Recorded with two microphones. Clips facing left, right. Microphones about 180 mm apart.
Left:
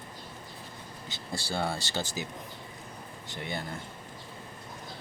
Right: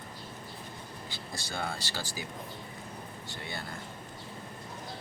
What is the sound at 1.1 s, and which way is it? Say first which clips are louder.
Speech: left 6 dB; 30° left (ahead or behind).